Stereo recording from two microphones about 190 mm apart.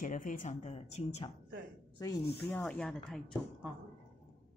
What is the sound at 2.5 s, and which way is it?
Speech, 5° left (ahead or behind).